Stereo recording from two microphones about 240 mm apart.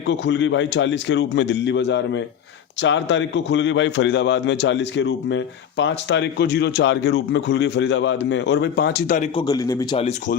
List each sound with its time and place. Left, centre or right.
0.1 s a man's voice: left
9.5 s a man's voice: centre
10.0 s speech: left